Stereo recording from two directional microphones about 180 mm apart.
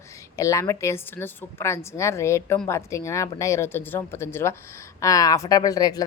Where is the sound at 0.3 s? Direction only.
15° left (ahead or behind).